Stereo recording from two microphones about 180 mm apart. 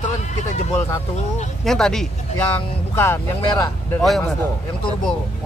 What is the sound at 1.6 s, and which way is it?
Speech, centre (ahead or behind).